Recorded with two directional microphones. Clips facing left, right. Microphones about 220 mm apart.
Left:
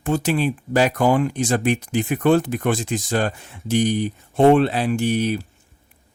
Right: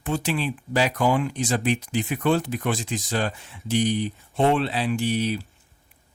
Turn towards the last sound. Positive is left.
turn(degrees=50)  # may be behind; listen again after turning